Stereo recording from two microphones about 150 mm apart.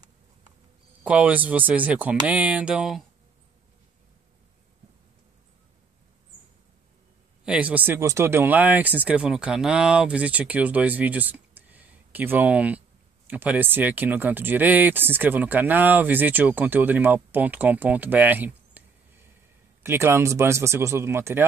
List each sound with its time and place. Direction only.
1.0 s speech: 10° right (ahead or behind)
7.4 s speech: 10° right (ahead or behind)